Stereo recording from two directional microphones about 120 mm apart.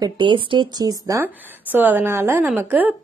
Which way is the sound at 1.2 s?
15° right (ahead or behind).